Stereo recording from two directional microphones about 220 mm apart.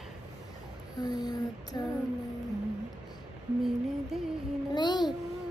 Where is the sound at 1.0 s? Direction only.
20° left (ahead or behind).